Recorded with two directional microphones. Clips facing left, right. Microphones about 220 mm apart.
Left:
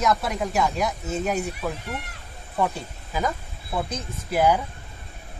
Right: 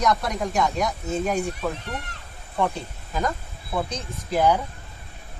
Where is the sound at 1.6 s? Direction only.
10° left (ahead or behind).